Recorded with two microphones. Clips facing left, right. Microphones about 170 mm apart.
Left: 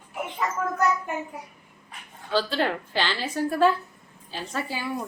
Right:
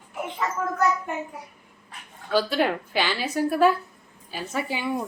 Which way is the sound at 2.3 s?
10° right (ahead or behind).